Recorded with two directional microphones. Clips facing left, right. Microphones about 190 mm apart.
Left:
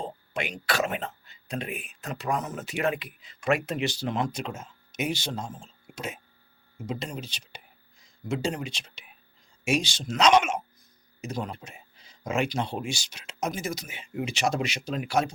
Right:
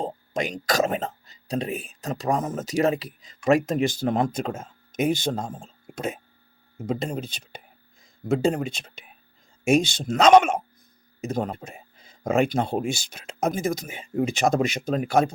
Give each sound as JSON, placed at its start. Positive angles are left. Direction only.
{"t": 0.0, "sound": "a sound", "side_deg": -40}
{"t": 0.7, "sound": "speech", "side_deg": -40}
{"t": 8.5, "sound": "speech", "side_deg": -50}